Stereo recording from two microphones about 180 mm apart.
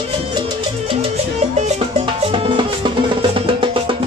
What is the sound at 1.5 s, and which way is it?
Music, 40° right (ahead or behind).